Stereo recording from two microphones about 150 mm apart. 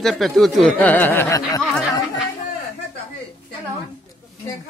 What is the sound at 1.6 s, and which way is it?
Chatter, 5° right (ahead or behind).